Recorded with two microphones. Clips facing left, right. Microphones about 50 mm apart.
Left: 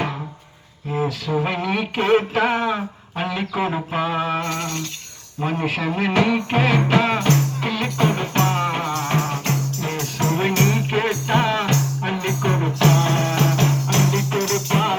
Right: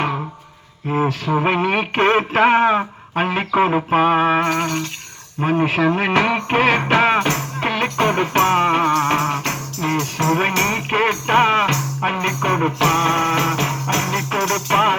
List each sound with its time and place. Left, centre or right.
0.9 s speech: right
5.4 s music: right